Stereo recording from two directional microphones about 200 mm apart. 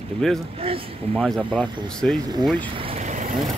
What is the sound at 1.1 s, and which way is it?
Speech, centre (ahead or behind).